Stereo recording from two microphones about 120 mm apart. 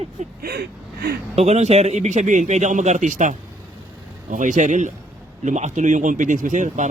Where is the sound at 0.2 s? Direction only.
75° right (ahead or behind).